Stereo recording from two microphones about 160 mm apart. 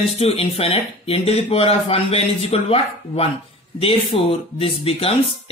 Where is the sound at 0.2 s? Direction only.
35° left (ahead or behind).